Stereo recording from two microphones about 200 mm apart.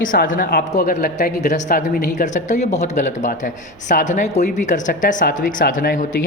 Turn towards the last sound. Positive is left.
turn(degrees=45)  # may be behind; listen again after turning